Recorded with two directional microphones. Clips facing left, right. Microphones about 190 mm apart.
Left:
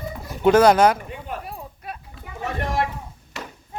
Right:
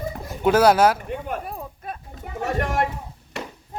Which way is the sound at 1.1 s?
45° right (ahead or behind).